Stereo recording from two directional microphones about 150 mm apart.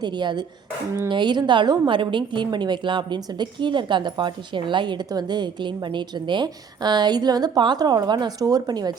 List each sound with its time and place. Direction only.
0.0 s a woman's voice: 30° right (ahead or behind)